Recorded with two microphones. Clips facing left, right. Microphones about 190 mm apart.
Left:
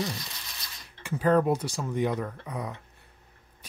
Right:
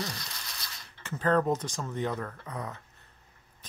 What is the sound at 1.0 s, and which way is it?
Speech, 10° left (ahead or behind).